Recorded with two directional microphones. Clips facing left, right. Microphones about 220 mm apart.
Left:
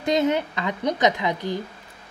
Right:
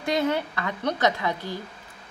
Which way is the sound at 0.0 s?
20° left (ahead or behind).